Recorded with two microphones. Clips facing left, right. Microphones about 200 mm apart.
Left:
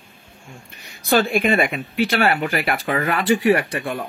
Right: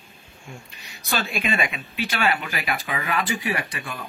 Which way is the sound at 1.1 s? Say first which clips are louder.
Left 9 dB; 55° left (ahead or behind).